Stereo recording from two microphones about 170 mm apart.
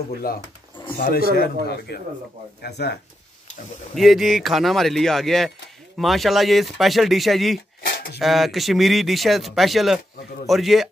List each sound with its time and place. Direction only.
0.9 s speech: 65° left (ahead or behind)
2.6 s speech: 75° left (ahead or behind)
3.9 s speech: centre (ahead or behind)
7.8 s a sound: 70° left (ahead or behind)
8.2 s speech: centre (ahead or behind)